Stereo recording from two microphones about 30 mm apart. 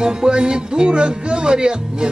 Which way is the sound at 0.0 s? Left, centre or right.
Right.